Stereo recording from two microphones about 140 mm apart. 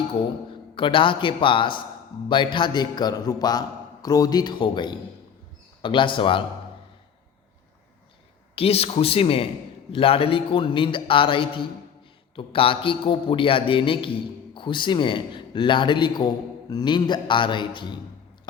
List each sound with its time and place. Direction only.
0.8 s a man's voice: 35° left (ahead or behind)
8.5 s a man's voice: 45° left (ahead or behind)